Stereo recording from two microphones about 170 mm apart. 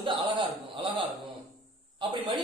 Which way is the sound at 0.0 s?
30° right (ahead or behind).